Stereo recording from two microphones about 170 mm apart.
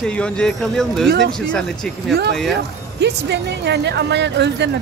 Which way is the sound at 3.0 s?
85° right.